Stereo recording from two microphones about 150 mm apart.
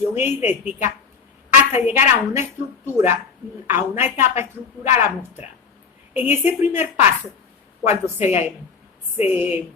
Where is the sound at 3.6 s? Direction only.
15° right (ahead or behind).